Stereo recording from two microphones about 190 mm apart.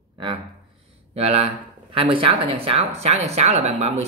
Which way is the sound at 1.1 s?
35° right (ahead or behind).